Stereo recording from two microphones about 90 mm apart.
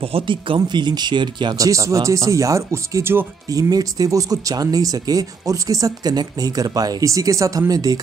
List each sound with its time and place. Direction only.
0.0 s speech: 80° right
0.6 s speech: 55° right (ahead or behind)
1.6 s speech: 35° right (ahead or behind)
3.4 s speech: 40° right (ahead or behind)